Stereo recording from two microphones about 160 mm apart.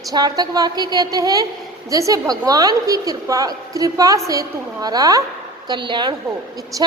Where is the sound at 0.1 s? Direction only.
25° right (ahead or behind).